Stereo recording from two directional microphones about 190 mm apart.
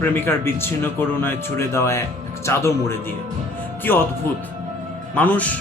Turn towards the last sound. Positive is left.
turn(degrees=10)  # may be behind; listen again after turning